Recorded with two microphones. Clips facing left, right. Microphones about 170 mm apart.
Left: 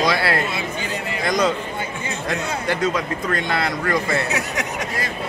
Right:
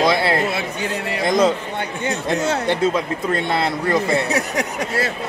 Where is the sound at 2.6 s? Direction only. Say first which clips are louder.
Right 3 dB; 25° right (ahead or behind).